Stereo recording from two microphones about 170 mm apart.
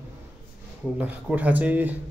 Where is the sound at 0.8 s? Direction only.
10° right (ahead or behind).